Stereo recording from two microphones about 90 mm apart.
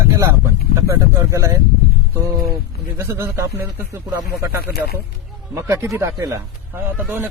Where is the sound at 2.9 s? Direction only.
35° right (ahead or behind).